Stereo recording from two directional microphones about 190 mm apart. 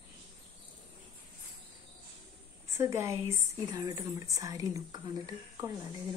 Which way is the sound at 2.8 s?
15° right (ahead or behind).